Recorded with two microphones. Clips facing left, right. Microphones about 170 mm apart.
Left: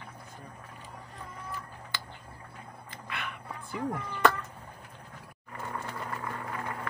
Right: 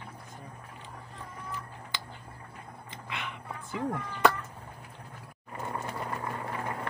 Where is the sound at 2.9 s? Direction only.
20° right (ahead or behind).